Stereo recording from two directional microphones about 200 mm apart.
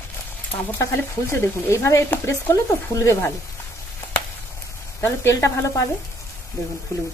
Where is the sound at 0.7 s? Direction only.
15° left (ahead or behind).